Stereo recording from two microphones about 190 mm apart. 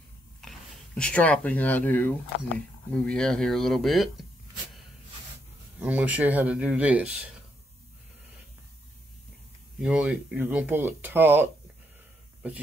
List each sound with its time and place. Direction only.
0.4 s speech: 5° left (ahead or behind)
5.8 s speech: 10° right (ahead or behind)
9.8 s speech: 5° right (ahead or behind)